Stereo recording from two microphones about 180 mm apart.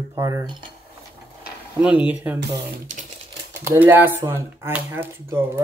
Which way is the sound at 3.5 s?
15° right (ahead or behind).